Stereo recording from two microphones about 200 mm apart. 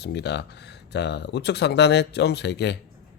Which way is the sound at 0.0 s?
55° left (ahead or behind).